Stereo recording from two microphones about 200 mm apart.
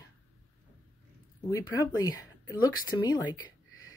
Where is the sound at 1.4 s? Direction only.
15° left (ahead or behind).